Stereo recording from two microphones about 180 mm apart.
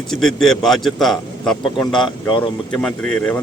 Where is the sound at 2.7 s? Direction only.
5° left (ahead or behind).